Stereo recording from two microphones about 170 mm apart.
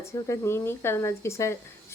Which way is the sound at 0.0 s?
15° left (ahead or behind).